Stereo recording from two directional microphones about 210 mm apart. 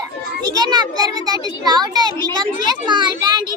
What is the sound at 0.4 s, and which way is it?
A child's voice, 20° right (ahead or behind).